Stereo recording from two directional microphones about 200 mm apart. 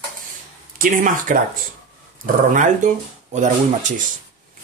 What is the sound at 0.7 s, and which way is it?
Speech, 40° right (ahead or behind).